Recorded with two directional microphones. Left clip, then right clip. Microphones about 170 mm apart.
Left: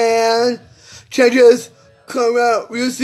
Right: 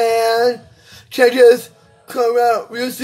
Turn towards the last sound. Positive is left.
turn(degrees=15)  # may be behind; listen again after turning